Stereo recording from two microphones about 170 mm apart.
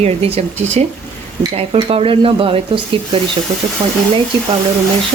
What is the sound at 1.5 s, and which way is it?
Speech, 35° right (ahead or behind).